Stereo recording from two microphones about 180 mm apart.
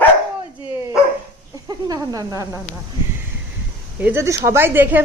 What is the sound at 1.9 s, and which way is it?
Speech, 20° right (ahead or behind).